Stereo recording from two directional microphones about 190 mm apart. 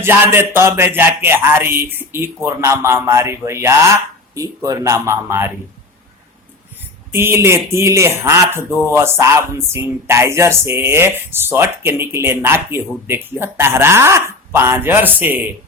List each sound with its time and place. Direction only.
0.0 s speech: 10° right (ahead or behind)
7.1 s speech: 15° right (ahead or behind)